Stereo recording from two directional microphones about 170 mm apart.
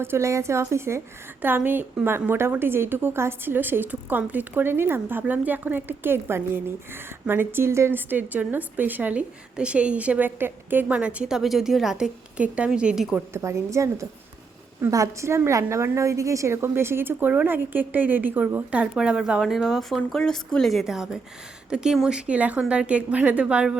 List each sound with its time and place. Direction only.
0.0 s a woman's voice: 15° right (ahead or behind)
13.3 s a woman's voice: 15° right (ahead or behind)